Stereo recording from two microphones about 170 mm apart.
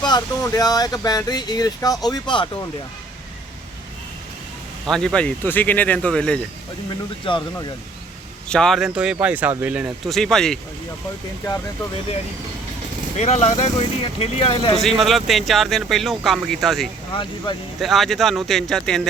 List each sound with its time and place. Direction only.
0.0 s speech: 25° left (ahead or behind)
4.9 s speech: 5° left (ahead or behind)
7.3 s speech: 30° left (ahead or behind)
8.4 s speech: 5° left (ahead or behind)
10.2 s speech: centre (ahead or behind)
13.1 s speech: 40° left (ahead or behind)
14.8 s speech: centre (ahead or behind)
17.1 s speech: 25° left (ahead or behind)
17.7 s speech: centre (ahead or behind)